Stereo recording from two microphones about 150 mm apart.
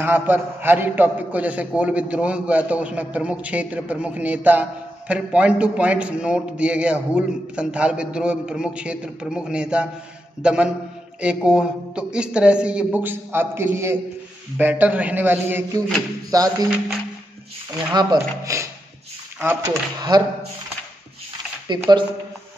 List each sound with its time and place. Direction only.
0.0 s a man's voice: 15° right (ahead or behind)
16.3 s speech: 25° right (ahead or behind)
17.9 s a man's voice: 20° right (ahead or behind)
20.0 s speech: 25° right (ahead or behind)
21.9 s speech: 25° right (ahead or behind)